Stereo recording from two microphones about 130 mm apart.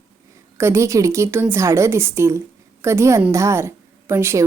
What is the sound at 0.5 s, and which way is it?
A woman's voice, 20° right (ahead or behind).